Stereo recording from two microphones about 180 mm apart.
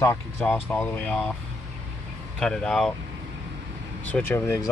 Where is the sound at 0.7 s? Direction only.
10° left (ahead or behind).